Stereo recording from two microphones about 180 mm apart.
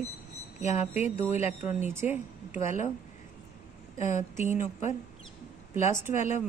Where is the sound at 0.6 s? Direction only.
40° left (ahead or behind).